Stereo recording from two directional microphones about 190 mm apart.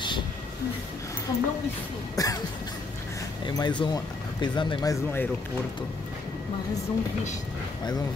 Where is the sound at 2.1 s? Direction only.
20° left (ahead or behind).